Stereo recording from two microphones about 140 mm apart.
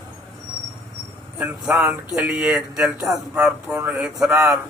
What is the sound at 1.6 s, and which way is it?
Speech, centre (ahead or behind).